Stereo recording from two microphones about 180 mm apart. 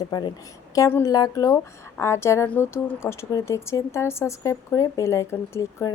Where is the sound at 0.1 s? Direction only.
25° left (ahead or behind).